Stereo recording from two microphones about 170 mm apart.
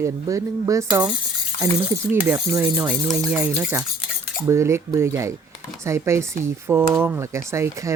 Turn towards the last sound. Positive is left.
turn(degrees=-15)  # may be behind; listen again after turning